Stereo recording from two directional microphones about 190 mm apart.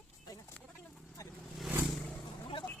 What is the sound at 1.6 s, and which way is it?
Vehicle, centre (ahead or behind).